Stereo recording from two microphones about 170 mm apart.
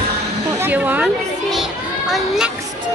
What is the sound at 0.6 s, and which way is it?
Children playing, 10° right (ahead or behind).